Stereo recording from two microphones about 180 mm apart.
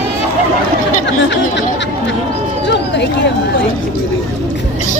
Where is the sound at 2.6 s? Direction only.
75° left (ahead or behind).